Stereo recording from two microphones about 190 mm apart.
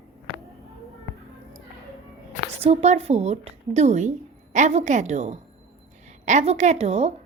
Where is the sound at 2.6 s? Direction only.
35° right (ahead or behind).